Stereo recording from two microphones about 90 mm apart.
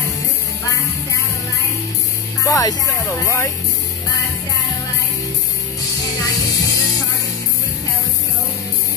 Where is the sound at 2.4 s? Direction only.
40° left (ahead or behind).